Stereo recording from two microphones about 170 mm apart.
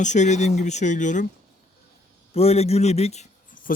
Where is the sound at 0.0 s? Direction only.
45° left (ahead or behind).